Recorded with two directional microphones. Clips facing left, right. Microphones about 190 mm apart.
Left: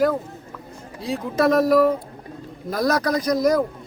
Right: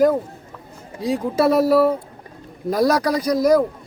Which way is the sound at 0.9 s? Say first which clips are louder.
Right 3 dB; 15° right (ahead or behind).